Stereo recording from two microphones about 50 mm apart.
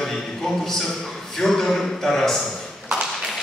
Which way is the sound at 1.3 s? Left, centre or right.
Centre.